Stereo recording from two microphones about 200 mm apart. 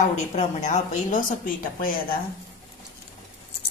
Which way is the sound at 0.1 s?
35° left (ahead or behind).